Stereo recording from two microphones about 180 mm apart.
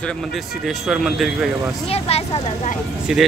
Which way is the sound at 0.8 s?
Centre (ahead or behind).